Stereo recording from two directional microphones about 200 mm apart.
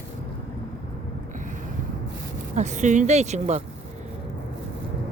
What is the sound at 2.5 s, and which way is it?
Speech, 35° right (ahead or behind).